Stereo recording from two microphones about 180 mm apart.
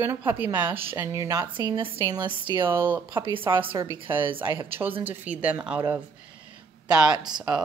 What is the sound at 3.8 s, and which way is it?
A woman's voice, 15° right (ahead or behind).